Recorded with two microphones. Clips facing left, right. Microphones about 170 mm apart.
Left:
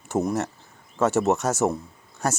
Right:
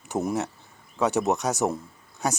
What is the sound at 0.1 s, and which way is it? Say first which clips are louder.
Speech: left 2 dB; centre (ahead or behind).